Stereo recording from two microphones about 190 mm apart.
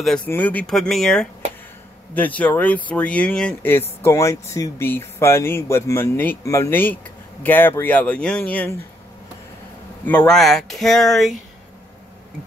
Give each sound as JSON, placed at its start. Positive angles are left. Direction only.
{"t": 0.0, "sound": "speech", "side_deg": 5}
{"t": 10.0, "sound": "speech", "side_deg": 5}